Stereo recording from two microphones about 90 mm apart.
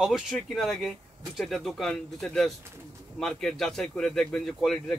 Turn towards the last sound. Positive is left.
turn(degrees=5)  # may be behind; listen again after turning